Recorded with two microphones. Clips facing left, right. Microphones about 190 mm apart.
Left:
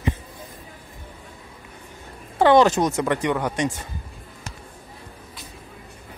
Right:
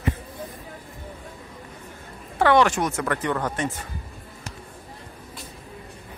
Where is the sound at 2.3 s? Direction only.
25° left (ahead or behind).